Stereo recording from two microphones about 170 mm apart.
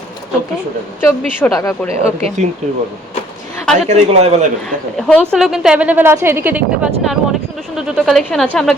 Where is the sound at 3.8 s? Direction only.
40° right (ahead or behind).